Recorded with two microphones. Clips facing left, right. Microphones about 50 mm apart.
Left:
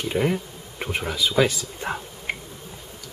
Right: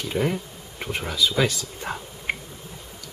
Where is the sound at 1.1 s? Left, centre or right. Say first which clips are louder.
Left 2 dB; centre.